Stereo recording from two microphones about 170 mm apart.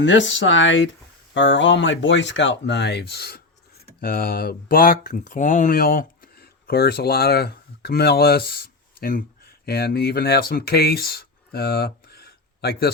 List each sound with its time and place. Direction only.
0.0 s speech: 90° left; by 3.4 s 70° left (ahead or behind)
4.0 s speech: 60° left (ahead or behind)